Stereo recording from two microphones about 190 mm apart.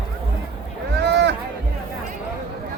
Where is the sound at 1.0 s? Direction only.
65° right (ahead or behind).